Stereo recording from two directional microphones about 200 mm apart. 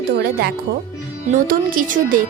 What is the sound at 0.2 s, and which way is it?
Speech, 50° right (ahead or behind).